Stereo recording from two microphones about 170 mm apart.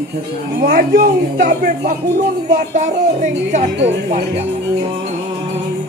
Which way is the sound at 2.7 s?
45° right (ahead or behind).